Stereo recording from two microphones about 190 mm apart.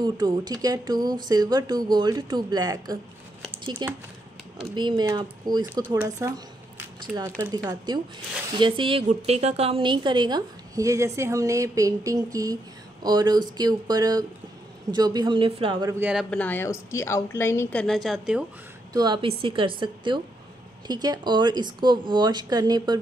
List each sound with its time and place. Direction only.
0.0 s a woman's voice: 20° right (ahead or behind)
16.1 s a woman's voice: centre (ahead or behind)
18.9 s a woman's voice: 25° right (ahead or behind)